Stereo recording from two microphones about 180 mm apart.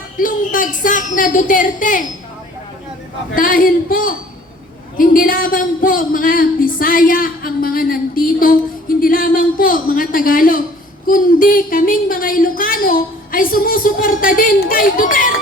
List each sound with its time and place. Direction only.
0.2 s speech: 50° left (ahead or behind)
3.3 s speech: 50° left (ahead or behind)